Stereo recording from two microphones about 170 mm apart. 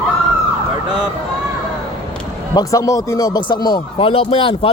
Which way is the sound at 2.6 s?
20° left (ahead or behind).